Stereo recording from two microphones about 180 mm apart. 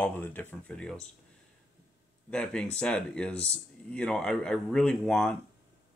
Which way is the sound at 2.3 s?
5° left (ahead or behind).